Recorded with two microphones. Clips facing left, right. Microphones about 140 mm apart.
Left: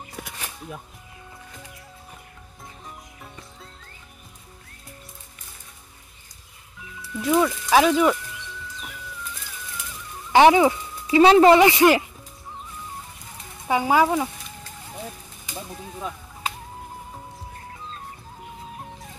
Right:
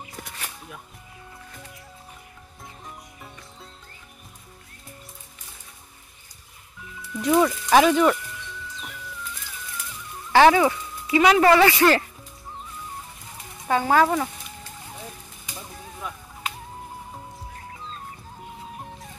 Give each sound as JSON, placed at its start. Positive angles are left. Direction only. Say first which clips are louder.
{"t": 7.0, "sound": "speech", "louder": "right 1 dB", "side_deg": 0}
{"t": 10.3, "sound": "speech", "louder": "left 1 dB", "side_deg": 20}
{"t": 13.7, "sound": "speech", "louder": "even", "side_deg": 10}
{"t": 18.8, "sound": "music", "louder": "even", "side_deg": 0}